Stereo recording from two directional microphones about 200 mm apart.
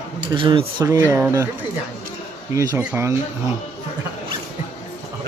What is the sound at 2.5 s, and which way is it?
Speech, 15° right (ahead or behind).